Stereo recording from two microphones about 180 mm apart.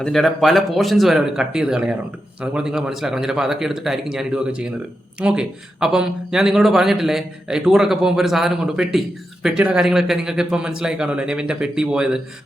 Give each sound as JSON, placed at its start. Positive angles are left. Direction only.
{"t": 0.0, "sound": "speech", "side_deg": 0}